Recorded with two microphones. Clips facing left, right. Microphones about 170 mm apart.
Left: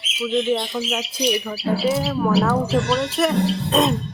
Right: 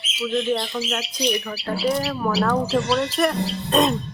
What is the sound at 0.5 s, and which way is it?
Speech, 5° left (ahead or behind).